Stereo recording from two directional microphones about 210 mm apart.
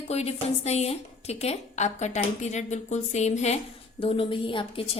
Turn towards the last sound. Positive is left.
turn(degrees=25)  # may be behind; listen again after turning